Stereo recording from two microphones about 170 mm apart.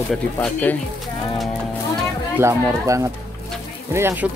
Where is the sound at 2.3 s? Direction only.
15° right (ahead or behind).